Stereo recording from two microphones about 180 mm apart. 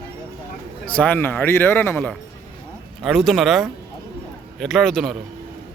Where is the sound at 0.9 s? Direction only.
10° left (ahead or behind).